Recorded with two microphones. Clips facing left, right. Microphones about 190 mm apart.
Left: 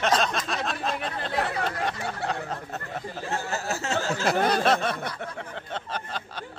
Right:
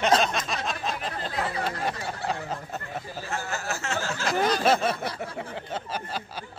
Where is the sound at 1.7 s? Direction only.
5° right (ahead or behind).